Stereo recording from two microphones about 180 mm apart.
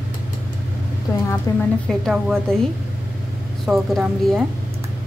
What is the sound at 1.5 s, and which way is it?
Speech, 15° left (ahead or behind).